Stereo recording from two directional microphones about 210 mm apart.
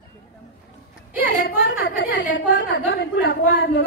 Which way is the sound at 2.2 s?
60° left (ahead or behind).